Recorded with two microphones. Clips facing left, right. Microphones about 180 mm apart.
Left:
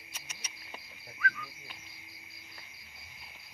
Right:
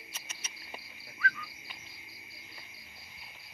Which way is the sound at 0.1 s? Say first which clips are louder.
Even; 10° left (ahead or behind).